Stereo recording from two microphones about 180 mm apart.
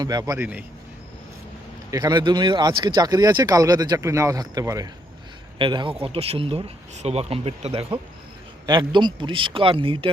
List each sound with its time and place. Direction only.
0.0 s speech: 20° right (ahead or behind)
1.9 s speech: 20° right (ahead or behind)